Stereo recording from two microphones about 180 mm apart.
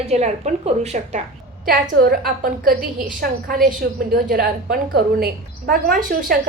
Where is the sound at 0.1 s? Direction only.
40° right (ahead or behind).